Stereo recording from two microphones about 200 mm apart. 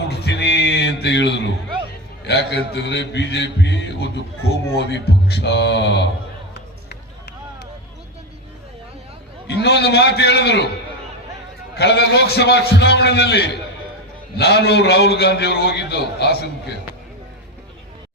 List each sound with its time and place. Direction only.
0.1 s music: 55° left (ahead or behind)
2.2 s a man's voice: 55° left (ahead or behind)
9.6 s a man's voice: 55° left (ahead or behind)
11.8 s a man's voice: 55° left (ahead or behind)